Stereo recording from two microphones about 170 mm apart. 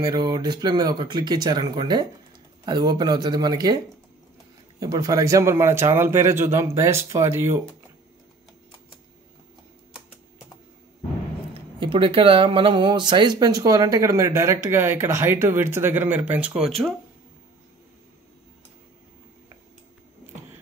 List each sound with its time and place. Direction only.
0.0 s speech: 25° right (ahead or behind)
11.5 s speech: 30° right (ahead or behind); by 16.9 s centre (ahead or behind)